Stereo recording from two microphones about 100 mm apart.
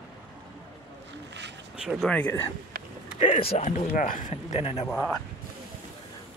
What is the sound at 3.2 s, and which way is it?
Speech, 75° left (ahead or behind).